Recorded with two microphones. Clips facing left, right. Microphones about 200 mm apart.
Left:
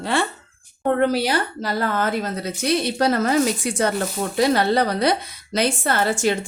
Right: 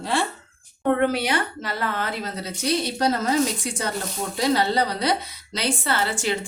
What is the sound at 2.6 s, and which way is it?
A woman's voice, 60° left (ahead or behind).